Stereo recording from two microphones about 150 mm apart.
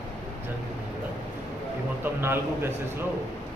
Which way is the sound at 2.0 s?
15° right (ahead or behind).